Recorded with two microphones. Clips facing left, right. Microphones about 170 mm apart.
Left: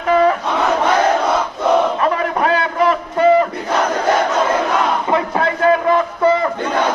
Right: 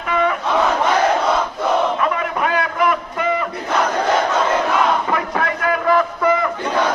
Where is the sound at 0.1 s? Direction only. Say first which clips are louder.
Left 6 dB; 35° left (ahead or behind).